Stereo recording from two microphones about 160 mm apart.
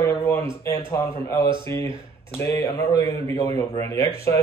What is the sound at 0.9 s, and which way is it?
Speech, 20° left (ahead or behind).